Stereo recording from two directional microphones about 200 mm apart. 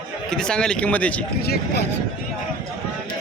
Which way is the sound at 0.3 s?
5° left (ahead or behind).